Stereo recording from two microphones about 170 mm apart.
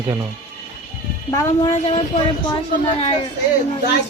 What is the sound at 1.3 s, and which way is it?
Speech, 20° left (ahead or behind).